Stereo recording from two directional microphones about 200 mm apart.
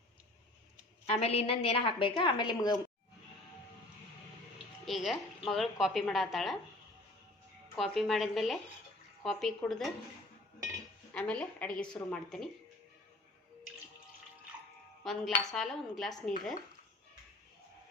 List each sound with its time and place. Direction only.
1.0 s a woman's voice: 30° left (ahead or behind)
4.9 s a woman's voice: centre (ahead or behind)
7.8 s a woman's voice: centre (ahead or behind)
11.1 s a woman's voice: 5° left (ahead or behind)
15.0 s a woman's voice: centre (ahead or behind)